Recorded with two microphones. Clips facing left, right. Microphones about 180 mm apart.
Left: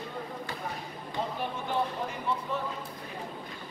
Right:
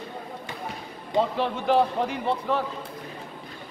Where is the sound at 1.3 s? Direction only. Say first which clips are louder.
Right 9 dB; 90° right.